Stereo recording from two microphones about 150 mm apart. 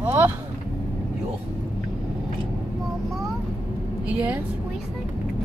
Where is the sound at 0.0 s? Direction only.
15° right (ahead or behind).